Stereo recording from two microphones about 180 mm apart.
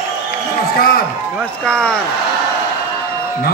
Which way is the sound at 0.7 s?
55° left (ahead or behind).